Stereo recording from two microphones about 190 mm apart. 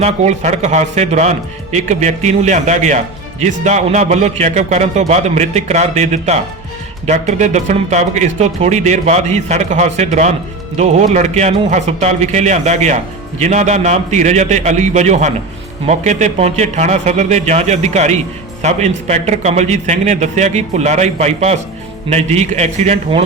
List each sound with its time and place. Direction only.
0.0 s speech: 35° right (ahead or behind)